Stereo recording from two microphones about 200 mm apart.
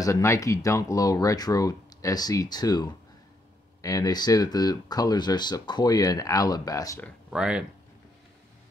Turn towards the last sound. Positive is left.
turn(degrees=-5)  # may be behind; listen again after turning